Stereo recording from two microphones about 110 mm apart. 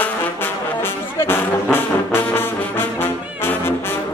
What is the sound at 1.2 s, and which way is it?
Brass instrument, 20° left (ahead or behind).